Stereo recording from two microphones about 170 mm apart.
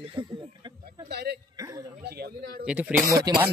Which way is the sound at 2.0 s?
65° right (ahead or behind).